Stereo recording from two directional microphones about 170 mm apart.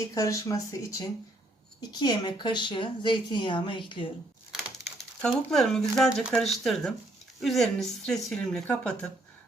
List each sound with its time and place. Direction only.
0.1 s a woman's voice: 20° left (ahead or behind)
4.5 s speech: centre (ahead or behind)